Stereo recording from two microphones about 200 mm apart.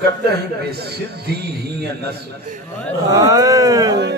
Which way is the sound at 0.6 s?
55° right (ahead or behind).